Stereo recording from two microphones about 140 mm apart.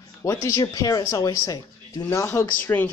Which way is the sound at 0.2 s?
20° left (ahead or behind).